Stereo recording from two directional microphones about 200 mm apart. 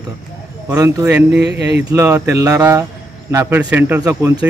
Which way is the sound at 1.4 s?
60° right (ahead or behind).